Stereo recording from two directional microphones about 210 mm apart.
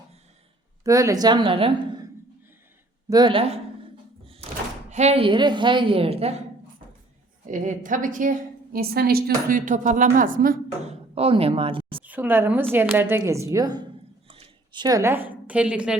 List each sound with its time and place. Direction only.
0.9 s a woman's voice: 15° right (ahead or behind)
3.1 s a woman's voice: 20° right (ahead or behind)
4.9 s a woman's voice: 30° right (ahead or behind)
7.4 s a woman's voice: 35° right (ahead or behind)
11.1 s speech: 25° right (ahead or behind)
12.0 s a woman's voice: 10° right (ahead or behind)